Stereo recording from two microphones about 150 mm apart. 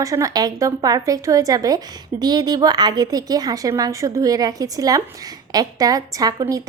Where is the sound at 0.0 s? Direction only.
20° right (ahead or behind).